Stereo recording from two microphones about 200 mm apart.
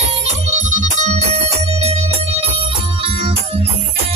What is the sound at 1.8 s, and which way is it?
Organ, 30° right (ahead or behind).